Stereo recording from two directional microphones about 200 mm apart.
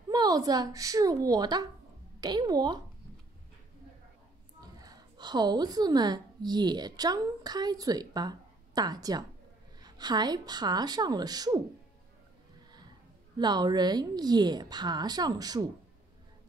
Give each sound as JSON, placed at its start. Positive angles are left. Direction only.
{"t": 0.1, "sound": "a woman's voice", "side_deg": -20}
{"t": 4.8, "sound": "a woman's voice", "side_deg": -20}
{"t": 13.4, "sound": "a woman's voice", "side_deg": -20}